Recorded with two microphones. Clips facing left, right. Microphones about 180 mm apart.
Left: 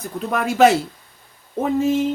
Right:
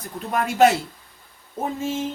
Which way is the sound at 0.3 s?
80° left.